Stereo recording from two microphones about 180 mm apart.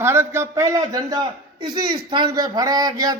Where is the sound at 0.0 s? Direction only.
15° right (ahead or behind).